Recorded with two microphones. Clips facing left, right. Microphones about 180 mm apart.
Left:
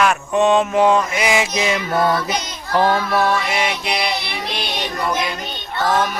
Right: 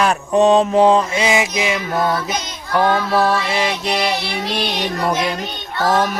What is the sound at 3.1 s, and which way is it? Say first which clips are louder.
Music: right 1 dB; 30° right (ahead or behind).